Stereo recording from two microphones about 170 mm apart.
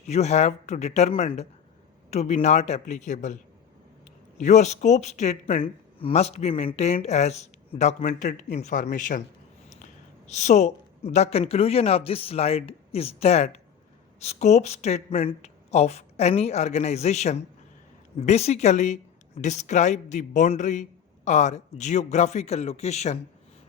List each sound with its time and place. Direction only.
0.1 s speech: 40° left (ahead or behind)
4.4 s speech: 45° left (ahead or behind)